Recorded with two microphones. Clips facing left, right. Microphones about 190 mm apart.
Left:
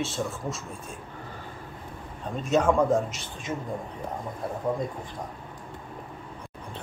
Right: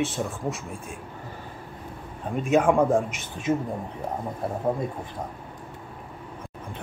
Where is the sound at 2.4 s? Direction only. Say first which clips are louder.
Right 2 dB; 15° right (ahead or behind).